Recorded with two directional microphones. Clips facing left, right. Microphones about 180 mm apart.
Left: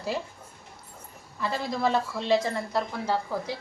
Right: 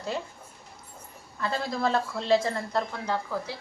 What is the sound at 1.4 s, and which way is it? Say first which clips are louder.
A woman's voice: left 1 dB; centre (ahead or behind).